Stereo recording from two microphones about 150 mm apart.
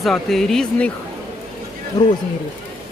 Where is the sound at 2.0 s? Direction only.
25° left (ahead or behind).